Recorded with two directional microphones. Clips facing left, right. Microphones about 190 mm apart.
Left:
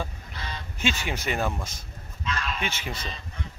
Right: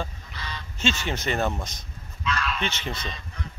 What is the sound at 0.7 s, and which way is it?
Speech, 10° left (ahead or behind).